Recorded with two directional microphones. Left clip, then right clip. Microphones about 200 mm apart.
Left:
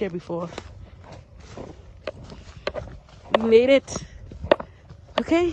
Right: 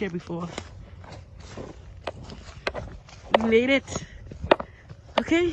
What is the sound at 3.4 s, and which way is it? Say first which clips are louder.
Speech: left 9 dB; 25° left (ahead or behind).